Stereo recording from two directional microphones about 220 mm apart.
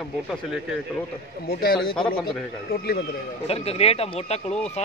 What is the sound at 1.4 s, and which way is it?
Speech, 45° left (ahead or behind).